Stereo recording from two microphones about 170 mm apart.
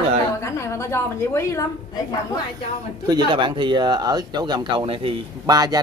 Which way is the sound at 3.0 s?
25° right (ahead or behind).